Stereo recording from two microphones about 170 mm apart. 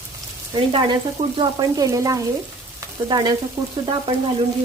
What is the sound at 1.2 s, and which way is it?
Frying, 40° right (ahead or behind).